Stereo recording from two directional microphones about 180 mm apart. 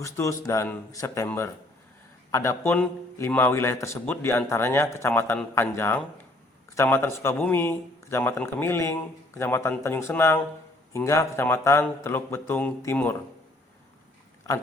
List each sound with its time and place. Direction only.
0.0 s a man's voice: 15° left (ahead or behind)